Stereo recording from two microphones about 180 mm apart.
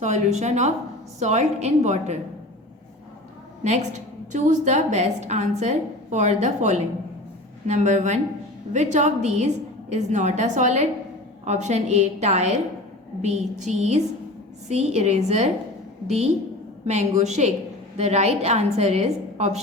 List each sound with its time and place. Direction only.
0.0 s a woman's voice: 40° right (ahead or behind)
3.6 s a woman's voice: 40° right (ahead or behind)